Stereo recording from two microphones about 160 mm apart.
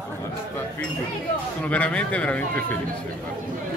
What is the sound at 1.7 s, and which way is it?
Speech, 10° left (ahead or behind).